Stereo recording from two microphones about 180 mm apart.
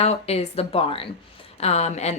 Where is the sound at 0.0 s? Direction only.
35° left (ahead or behind).